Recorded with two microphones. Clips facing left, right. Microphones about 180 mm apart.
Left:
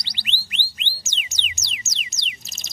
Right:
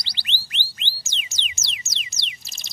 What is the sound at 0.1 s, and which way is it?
Music, 15° left (ahead or behind).